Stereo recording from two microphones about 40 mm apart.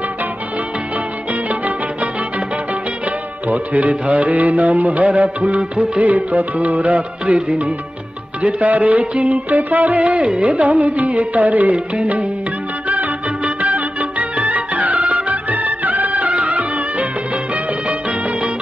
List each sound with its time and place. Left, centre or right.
3.4 s music: right
12.8 s music: right